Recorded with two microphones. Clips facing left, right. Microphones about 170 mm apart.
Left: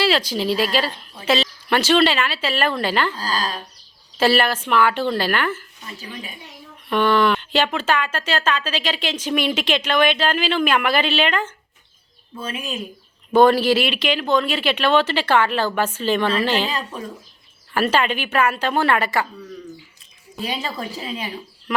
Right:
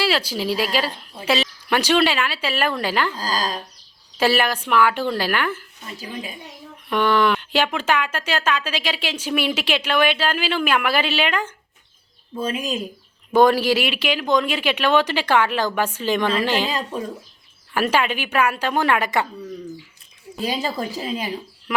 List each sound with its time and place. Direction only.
0.0 s speech: 10° right (ahead or behind)
3.2 s speech: 40° right (ahead or behind)
4.2 s speech: 10° right (ahead or behind)
6.9 s speech: 10° right (ahead or behind)
12.4 s speech: 40° right (ahead or behind)
13.3 s speech: 10° right (ahead or behind)
17.7 s speech: 10° right (ahead or behind)
20.4 s speech: 35° right (ahead or behind)
21.7 s speech: 5° right (ahead or behind)